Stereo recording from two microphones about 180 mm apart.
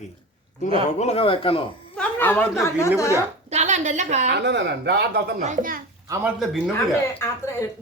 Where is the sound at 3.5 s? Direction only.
40° right (ahead or behind).